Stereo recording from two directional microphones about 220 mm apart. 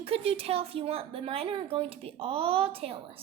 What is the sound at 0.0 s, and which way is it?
A woman's voice, 25° right (ahead or behind).